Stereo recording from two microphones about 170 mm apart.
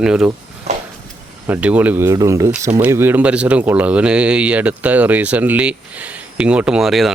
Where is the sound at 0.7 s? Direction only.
40° right (ahead or behind).